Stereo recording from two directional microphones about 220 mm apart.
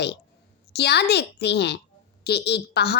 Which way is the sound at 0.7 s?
50° left (ahead or behind).